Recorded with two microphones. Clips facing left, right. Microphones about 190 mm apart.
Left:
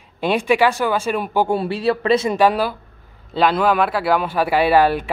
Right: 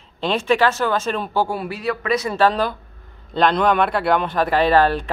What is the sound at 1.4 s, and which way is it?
Speech, 30° left (ahead or behind).